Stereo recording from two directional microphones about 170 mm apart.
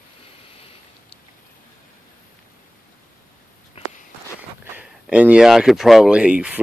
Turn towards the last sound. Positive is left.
turn(degrees=-5)  # may be behind; listen again after turning